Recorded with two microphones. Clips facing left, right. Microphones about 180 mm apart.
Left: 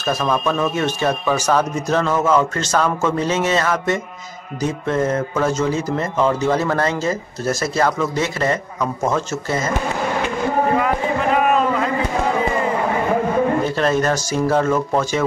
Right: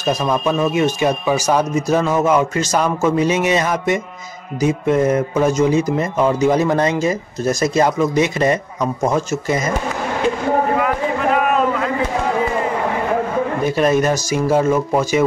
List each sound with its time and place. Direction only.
0.0 s speech: 15° right (ahead or behind)
11.3 s a sound: centre (ahead or behind)
13.7 s speech: 10° right (ahead or behind)